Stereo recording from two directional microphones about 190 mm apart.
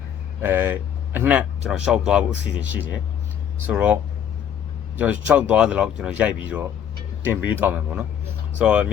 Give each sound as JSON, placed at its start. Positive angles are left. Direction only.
{"t": 0.4, "sound": "speech", "side_deg": -10}
{"t": 4.9, "sound": "speech", "side_deg": -10}